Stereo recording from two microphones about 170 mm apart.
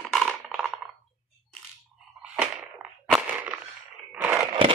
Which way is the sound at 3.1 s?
10° right (ahead or behind).